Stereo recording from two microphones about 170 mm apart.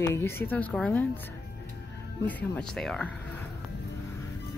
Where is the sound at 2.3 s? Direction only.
10° left (ahead or behind).